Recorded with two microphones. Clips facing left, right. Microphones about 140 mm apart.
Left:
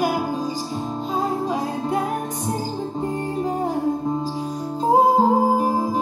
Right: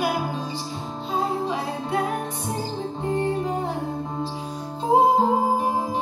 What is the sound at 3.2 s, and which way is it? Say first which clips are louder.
Music: left 1 dB; 40° left (ahead or behind).